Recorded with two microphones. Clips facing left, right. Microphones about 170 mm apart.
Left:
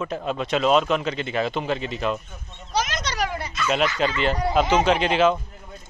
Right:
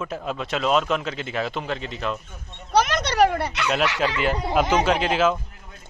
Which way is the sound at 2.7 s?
60° right (ahead or behind).